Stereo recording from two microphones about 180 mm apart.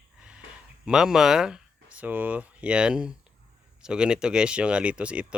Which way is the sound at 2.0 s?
10° right (ahead or behind).